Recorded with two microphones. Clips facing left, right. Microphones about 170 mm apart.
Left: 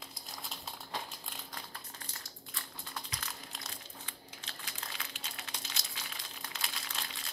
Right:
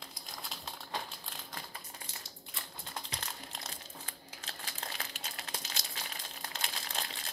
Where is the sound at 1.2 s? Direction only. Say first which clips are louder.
Right 1 dB; centre (ahead or behind).